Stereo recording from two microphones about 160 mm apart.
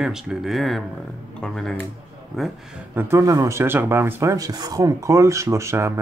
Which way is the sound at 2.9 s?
15° right (ahead or behind).